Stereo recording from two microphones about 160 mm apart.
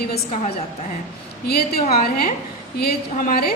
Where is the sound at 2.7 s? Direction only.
65° left (ahead or behind).